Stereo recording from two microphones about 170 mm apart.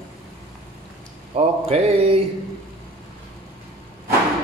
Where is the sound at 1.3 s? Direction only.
35° right (ahead or behind).